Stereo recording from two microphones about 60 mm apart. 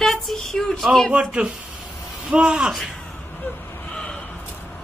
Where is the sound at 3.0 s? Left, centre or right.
Left.